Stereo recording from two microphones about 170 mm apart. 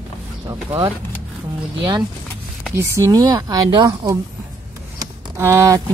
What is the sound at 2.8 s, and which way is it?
Speech, 15° right (ahead or behind).